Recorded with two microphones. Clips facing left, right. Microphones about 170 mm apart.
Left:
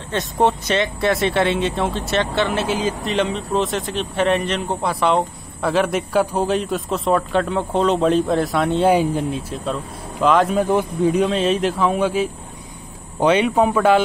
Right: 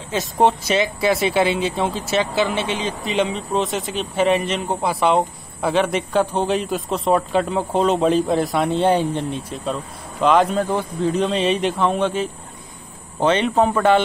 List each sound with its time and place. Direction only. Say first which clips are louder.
0.1 s speech: right 1 dB; centre (ahead or behind)
10.6 s speech: left 3 dB; 15° left (ahead or behind)